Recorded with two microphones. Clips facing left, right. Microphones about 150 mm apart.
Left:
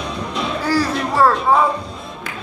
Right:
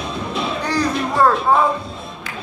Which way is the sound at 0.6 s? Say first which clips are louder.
Left 2 dB; 5° left (ahead or behind).